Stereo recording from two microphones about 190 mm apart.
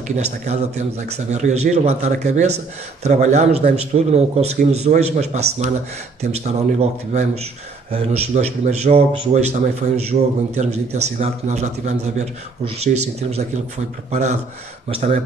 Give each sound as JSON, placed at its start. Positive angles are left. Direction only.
{"t": 0.1, "sound": "a man's voice", "side_deg": -35}